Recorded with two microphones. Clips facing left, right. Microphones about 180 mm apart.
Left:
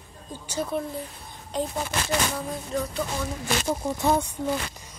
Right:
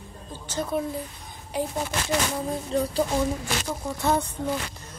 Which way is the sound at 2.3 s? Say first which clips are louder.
Right 3 dB; 30° right (ahead or behind).